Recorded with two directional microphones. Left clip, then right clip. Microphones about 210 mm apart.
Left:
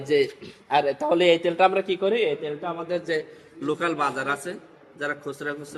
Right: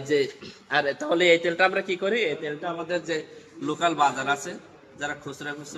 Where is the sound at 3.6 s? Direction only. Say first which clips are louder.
Right 2 dB; centre (ahead or behind).